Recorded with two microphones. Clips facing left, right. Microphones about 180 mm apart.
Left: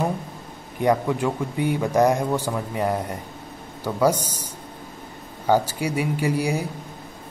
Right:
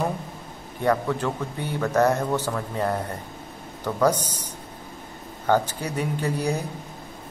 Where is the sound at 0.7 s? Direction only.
15° left (ahead or behind).